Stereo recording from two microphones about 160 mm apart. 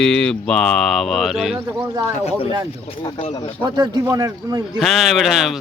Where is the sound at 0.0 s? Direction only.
5° left (ahead or behind).